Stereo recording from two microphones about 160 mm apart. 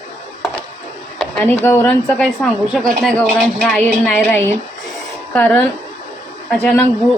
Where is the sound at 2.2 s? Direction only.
5° left (ahead or behind).